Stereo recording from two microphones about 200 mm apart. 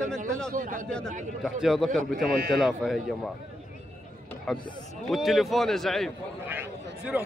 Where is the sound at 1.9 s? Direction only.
40° right (ahead or behind).